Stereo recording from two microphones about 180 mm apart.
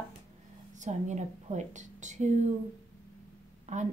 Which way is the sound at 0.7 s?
40° right (ahead or behind).